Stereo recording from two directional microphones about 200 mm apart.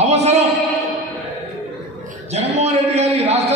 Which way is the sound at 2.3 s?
30° right (ahead or behind).